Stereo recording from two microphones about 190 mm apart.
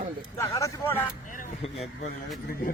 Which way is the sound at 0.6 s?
10° left (ahead or behind).